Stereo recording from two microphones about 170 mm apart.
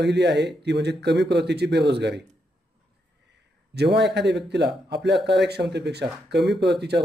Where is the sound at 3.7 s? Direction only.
80° right.